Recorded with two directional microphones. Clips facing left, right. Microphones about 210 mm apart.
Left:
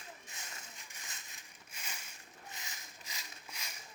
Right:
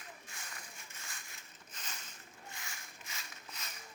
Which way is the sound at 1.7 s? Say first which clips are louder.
Even; 10° left (ahead or behind).